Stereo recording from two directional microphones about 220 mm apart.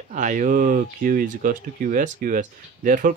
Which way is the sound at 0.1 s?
35° right (ahead or behind).